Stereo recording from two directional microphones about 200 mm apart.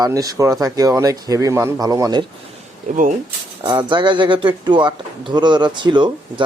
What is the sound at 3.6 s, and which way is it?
Speech, 25° right (ahead or behind).